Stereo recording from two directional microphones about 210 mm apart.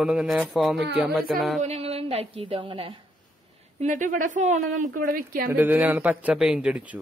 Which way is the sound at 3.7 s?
35° right (ahead or behind).